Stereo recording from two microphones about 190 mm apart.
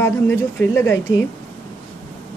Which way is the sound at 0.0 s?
10° left (ahead or behind).